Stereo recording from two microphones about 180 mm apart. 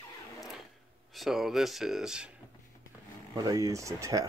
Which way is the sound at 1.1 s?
Centre (ahead or behind).